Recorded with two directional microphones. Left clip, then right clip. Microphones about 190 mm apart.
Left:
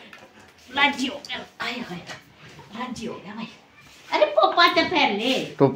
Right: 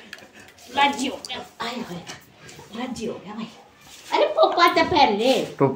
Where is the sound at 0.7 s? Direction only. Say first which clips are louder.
Right 1 dB; 15° left (ahead or behind).